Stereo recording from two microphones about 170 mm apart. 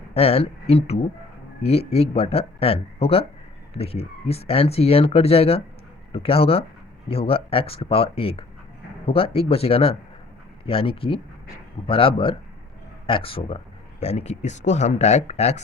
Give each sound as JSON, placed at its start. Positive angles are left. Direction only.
{"t": 0.1, "sound": "speech", "side_deg": 35}